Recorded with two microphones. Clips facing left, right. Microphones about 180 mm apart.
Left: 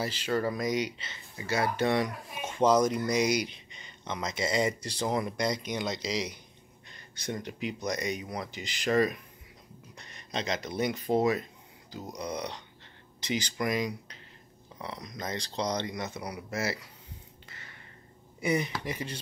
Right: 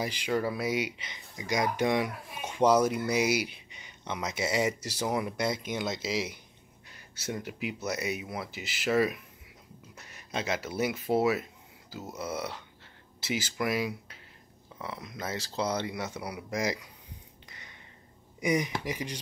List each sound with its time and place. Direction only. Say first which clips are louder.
0.0 s speech: even; 15° right (ahead or behind)
17.5 s a sound: left 1 dB; 15° right (ahead or behind)
18.4 s speech: right 1 dB; 10° right (ahead or behind)